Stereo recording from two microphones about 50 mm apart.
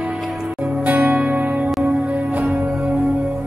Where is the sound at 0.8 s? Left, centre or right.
Right.